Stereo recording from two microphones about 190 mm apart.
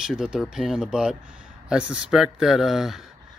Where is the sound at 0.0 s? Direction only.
5° right (ahead or behind).